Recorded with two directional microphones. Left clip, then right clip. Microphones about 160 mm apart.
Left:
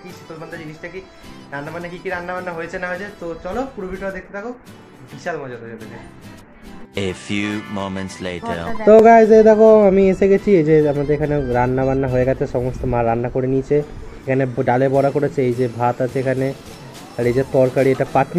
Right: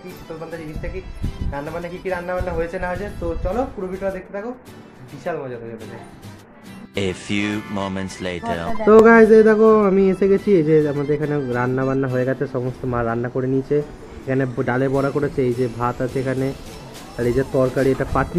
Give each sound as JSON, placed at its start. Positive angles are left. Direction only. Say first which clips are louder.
{"t": 1.5, "sound": "speech", "louder": "even", "side_deg": 0}
{"t": 7.0, "sound": "speech", "louder": "even", "side_deg": 0}
{"t": 9.0, "sound": "speech", "louder": "left 1 dB", "side_deg": 15}
{"t": 15.5, "sound": "speech", "louder": "left 2 dB", "side_deg": 0}
{"t": 15.8, "sound": "speech", "louder": "left 4 dB", "side_deg": 20}
{"t": 17.4, "sound": "speech", "louder": "left 4 dB", "side_deg": 0}
{"t": 17.7, "sound": "speech", "louder": "left 4 dB", "side_deg": 20}